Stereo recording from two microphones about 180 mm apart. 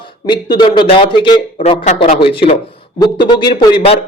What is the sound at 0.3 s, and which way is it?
A man's voice, 25° left (ahead or behind).